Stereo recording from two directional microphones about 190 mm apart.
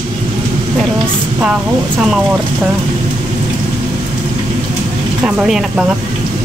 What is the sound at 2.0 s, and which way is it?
Speech, 5° right (ahead or behind).